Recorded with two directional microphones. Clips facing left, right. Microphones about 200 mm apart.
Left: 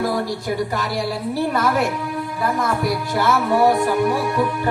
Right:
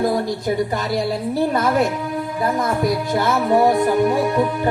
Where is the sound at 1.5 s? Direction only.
20° right (ahead or behind).